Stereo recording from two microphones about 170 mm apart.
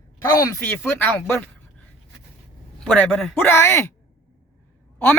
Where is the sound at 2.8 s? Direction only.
5° left (ahead or behind).